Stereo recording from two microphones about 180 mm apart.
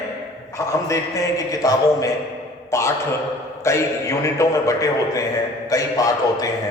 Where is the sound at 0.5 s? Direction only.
15° left (ahead or behind).